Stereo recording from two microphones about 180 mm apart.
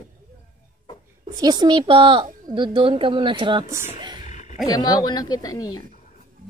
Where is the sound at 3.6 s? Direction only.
15° right (ahead or behind).